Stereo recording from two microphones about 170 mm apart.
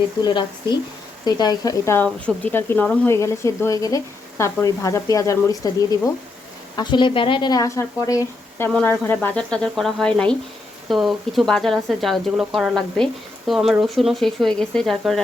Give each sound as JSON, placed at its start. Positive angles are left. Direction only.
{"t": 0.2, "sound": "a woman's voice", "side_deg": 25}